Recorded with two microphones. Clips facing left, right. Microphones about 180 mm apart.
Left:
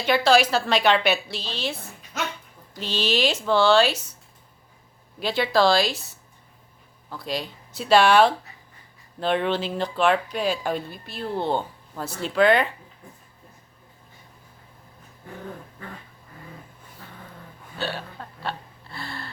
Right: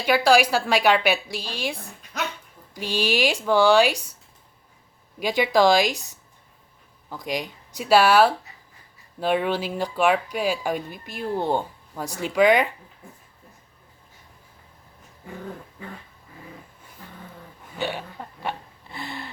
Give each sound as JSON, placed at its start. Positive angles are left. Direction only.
{"t": 0.0, "sound": "speech", "side_deg": -10}
{"t": 5.2, "sound": "speech", "side_deg": -15}
{"t": 7.1, "sound": "speech", "side_deg": -15}
{"t": 17.7, "sound": "hiccup", "side_deg": -15}